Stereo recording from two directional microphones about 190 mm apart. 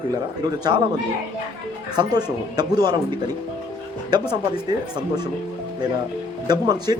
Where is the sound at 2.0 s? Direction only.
20° right (ahead or behind).